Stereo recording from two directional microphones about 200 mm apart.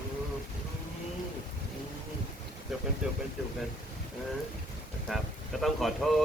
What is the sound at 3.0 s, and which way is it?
Speech, 5° right (ahead or behind).